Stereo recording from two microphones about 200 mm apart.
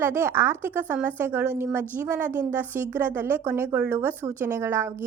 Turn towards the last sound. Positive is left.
turn(degrees=-10)  # may be behind; listen again after turning